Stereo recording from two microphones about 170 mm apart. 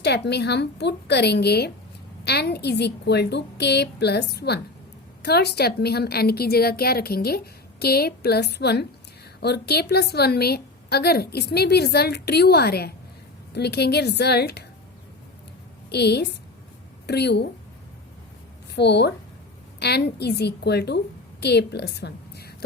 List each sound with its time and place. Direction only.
0.3 s a woman's voice: 80° left
15.9 s a woman's voice: 75° left (ahead or behind)
18.8 s a woman's voice: 80° left